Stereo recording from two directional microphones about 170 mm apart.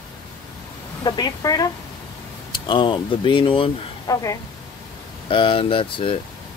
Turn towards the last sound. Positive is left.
turn(degrees=30)  # may be behind; listen again after turning